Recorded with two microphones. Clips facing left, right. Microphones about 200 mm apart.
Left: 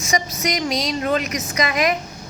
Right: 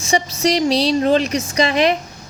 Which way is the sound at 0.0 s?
30° right (ahead or behind).